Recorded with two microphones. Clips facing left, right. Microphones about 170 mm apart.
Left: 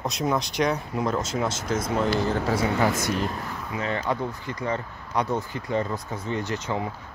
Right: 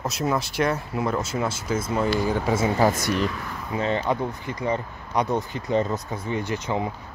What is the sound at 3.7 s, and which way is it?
Speech, 25° right (ahead or behind).